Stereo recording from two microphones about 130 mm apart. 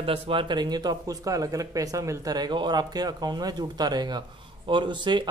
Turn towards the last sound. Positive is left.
turn(degrees=-35)  # may be behind; listen again after turning